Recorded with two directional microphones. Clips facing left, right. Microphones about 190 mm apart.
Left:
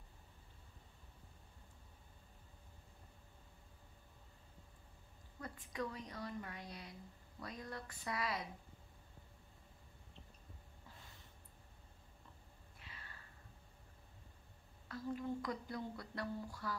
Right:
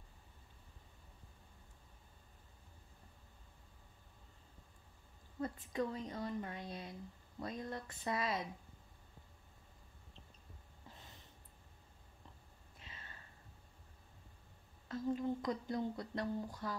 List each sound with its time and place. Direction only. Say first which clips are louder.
5.4 s speech: right 6 dB; 25° right (ahead or behind)
12.7 s a sound: right 2 dB; 20° right (ahead or behind)
14.9 s speech: right 5 dB; 20° right (ahead or behind)